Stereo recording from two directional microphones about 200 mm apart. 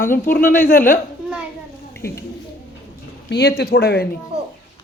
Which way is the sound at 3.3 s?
55° left (ahead or behind).